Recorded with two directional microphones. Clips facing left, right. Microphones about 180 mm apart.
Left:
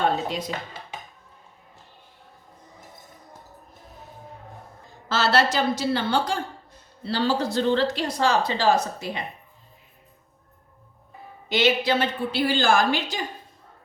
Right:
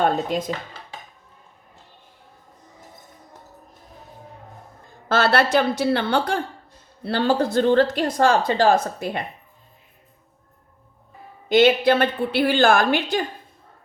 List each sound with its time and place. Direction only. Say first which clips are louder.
0.0 s speech: right 3 dB; 50° right (ahead or behind)
5.0 s a woman's voice: right 3 dB; 55° right (ahead or behind)
11.4 s a woman's voice: right 6 dB; 50° right (ahead or behind)